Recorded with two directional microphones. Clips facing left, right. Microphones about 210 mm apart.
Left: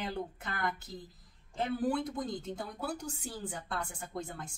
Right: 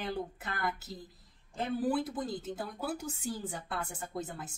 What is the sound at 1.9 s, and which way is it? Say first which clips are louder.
Speech: right 1 dB; 5° right (ahead or behind).